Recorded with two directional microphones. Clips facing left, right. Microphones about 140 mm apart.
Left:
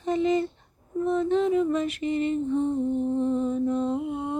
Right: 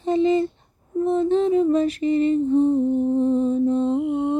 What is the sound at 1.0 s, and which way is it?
Female singing, 30° right (ahead or behind).